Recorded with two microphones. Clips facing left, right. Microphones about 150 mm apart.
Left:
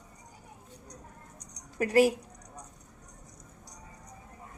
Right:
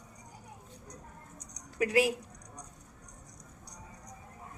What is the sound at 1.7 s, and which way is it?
Speech, 40° left (ahead or behind).